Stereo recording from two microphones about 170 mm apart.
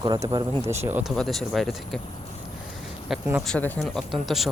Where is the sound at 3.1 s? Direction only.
Centre (ahead or behind).